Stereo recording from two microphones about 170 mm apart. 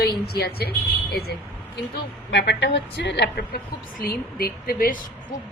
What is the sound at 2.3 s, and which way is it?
A woman's voice, 90° left.